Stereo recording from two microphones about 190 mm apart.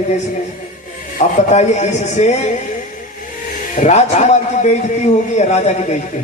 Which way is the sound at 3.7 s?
40° left (ahead or behind).